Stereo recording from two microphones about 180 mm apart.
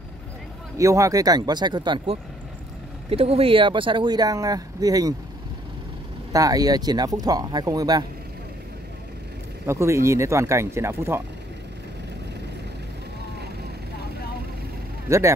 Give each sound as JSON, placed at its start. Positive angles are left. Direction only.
{"t": 0.7, "sound": "speech", "side_deg": -15}
{"t": 6.3, "sound": "speech", "side_deg": -20}
{"t": 9.7, "sound": "speech", "side_deg": -15}
{"t": 15.0, "sound": "speech", "side_deg": -15}